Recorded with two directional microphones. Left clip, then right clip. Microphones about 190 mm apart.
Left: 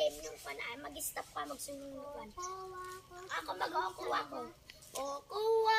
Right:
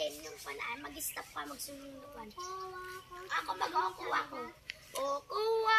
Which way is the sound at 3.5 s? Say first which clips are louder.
Right 2 dB; 30° left (ahead or behind).